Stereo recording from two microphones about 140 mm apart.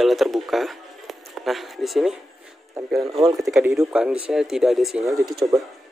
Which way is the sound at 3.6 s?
20° right (ahead or behind).